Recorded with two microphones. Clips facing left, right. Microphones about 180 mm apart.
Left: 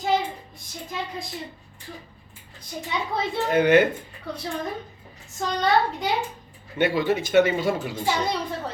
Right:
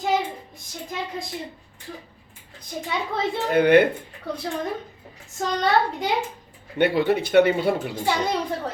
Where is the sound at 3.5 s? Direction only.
60° right (ahead or behind).